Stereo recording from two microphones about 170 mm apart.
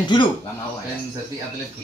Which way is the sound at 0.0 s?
25° left (ahead or behind).